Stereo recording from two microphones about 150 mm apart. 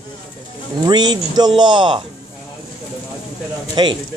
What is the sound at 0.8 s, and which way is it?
Speech, 30° right (ahead or behind).